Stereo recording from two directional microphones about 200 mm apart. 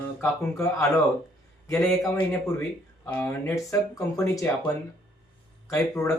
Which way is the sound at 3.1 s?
10° left (ahead or behind).